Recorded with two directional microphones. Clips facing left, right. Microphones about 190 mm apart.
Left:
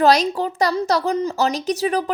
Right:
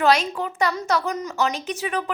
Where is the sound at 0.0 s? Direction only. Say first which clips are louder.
Left 4 dB; 40° left (ahead or behind).